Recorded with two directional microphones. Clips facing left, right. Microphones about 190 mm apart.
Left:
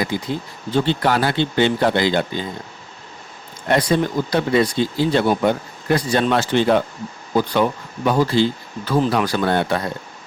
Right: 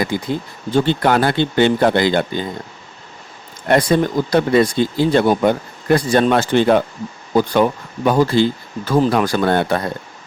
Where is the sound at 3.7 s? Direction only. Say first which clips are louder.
Right 3 dB; 50° right (ahead or behind).